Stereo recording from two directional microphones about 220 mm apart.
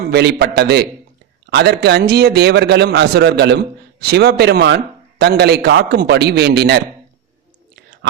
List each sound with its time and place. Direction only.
0.0 s a man's voice: 50° right (ahead or behind)